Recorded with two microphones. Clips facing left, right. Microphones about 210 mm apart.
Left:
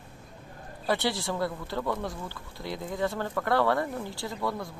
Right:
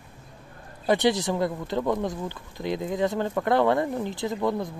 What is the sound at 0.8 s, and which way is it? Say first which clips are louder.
Speech: right 6 dB; 20° right (ahead or behind).